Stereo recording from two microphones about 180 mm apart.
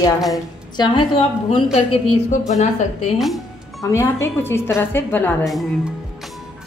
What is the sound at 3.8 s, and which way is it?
A woman's voice, 15° left (ahead or behind).